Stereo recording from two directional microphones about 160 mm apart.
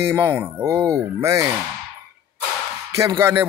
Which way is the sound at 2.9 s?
20° right (ahead or behind).